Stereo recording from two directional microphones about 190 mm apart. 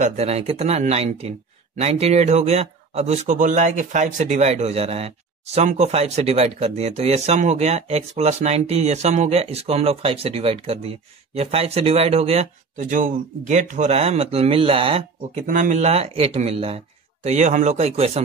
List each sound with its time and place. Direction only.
0.0 s a man's voice: 35° right (ahead or behind)
15.4 s a man's voice: 45° right (ahead or behind)